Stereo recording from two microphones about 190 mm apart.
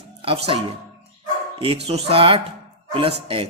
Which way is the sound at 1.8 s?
30° right (ahead or behind).